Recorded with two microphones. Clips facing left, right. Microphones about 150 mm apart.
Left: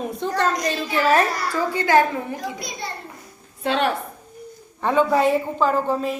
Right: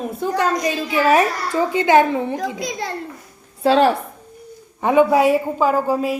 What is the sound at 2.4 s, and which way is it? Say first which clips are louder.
Speech: right 6 dB; 90° right.